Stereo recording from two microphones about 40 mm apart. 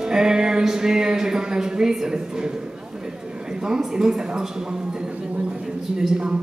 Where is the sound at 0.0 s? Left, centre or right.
Centre.